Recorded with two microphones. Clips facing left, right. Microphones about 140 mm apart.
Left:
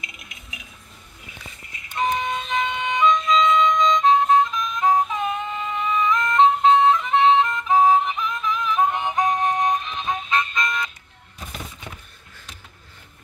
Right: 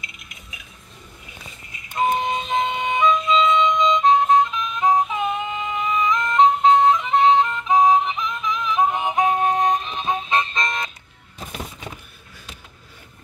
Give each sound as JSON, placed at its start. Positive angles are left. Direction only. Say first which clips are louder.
{"t": 2.0, "sound": "music", "louder": "right 3 dB", "side_deg": -25}
{"t": 9.1, "sound": "music", "louder": "right 2 dB", "side_deg": -25}